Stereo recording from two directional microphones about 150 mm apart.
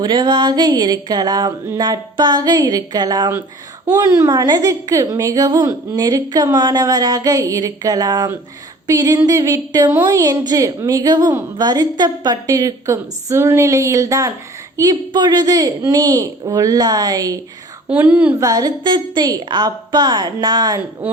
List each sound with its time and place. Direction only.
0.0 s a woman's voice: 30° right (ahead or behind)
17.8 s a woman's voice: 10° right (ahead or behind)
18.3 s a woman's voice: 25° right (ahead or behind)